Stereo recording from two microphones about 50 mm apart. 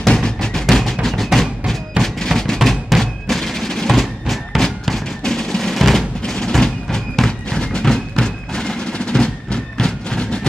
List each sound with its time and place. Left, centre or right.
0.1 s music: centre
2.2 s percussion: centre
4.8 s music: centre